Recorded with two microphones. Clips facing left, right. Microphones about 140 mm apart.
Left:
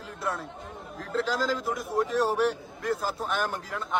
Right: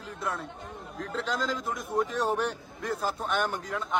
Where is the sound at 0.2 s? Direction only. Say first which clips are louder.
Left 2 dB; centre (ahead or behind).